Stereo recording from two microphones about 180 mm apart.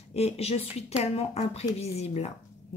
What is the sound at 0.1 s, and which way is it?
Speech, 35° left (ahead or behind).